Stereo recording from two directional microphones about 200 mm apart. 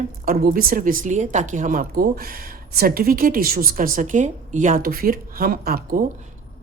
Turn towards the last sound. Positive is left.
turn(degrees=-50)  # may be behind; listen again after turning